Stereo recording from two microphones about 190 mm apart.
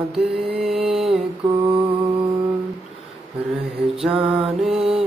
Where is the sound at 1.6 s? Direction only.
25° right (ahead or behind).